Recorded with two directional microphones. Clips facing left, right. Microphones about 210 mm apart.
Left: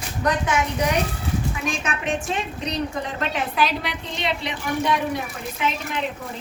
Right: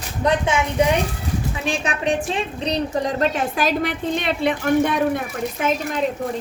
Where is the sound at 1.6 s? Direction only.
35° right (ahead or behind).